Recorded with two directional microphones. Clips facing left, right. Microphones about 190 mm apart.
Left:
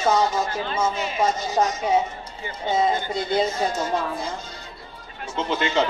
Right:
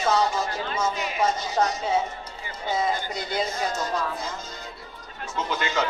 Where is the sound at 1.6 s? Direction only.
10° left (ahead or behind).